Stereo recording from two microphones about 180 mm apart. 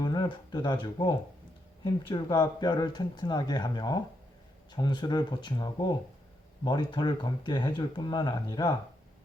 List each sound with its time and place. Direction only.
0.0 s speech: 25° left (ahead or behind)